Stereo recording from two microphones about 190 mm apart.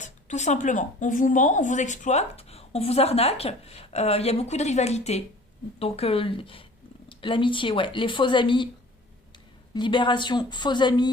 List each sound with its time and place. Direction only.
0.0 s speech: 40° left (ahead or behind)
9.7 s speech: 25° left (ahead or behind)